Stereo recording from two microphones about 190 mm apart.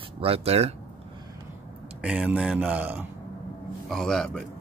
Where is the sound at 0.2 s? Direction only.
30° right (ahead or behind).